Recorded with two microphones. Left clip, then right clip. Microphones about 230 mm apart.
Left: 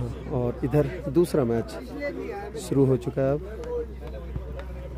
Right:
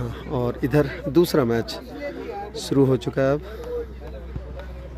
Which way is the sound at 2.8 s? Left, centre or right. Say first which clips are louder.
Right 3 dB; centre.